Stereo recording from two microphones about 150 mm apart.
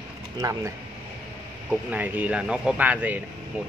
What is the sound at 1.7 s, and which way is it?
Speech, 10° right (ahead or behind).